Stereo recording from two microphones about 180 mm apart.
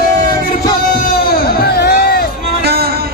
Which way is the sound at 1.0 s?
60° left (ahead or behind).